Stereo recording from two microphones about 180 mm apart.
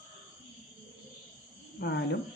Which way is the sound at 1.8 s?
65° left (ahead or behind).